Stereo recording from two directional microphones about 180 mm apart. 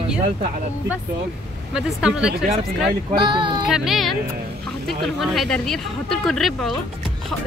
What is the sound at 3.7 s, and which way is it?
Speech, centre (ahead or behind).